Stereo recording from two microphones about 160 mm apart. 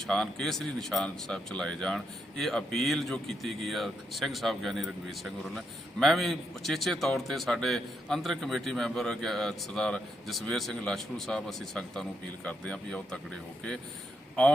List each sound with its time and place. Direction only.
0.1 s speech: centre (ahead or behind)